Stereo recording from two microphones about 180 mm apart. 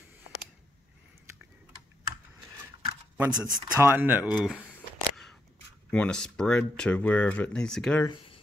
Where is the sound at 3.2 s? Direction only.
5° right (ahead or behind).